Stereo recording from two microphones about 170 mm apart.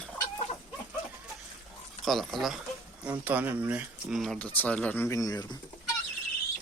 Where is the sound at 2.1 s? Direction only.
Centre (ahead or behind); by 5.5 s 20° left (ahead or behind).